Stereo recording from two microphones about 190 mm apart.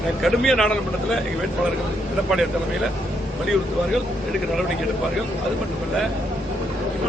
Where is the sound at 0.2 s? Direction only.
Centre (ahead or behind).